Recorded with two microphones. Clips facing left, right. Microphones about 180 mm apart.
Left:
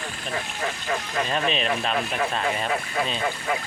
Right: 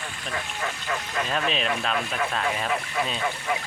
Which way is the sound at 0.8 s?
35° left (ahead or behind).